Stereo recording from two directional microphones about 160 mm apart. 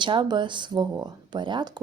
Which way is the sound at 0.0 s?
30° right (ahead or behind).